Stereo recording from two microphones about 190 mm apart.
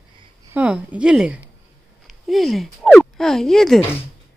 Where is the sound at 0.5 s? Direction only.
5° right (ahead or behind).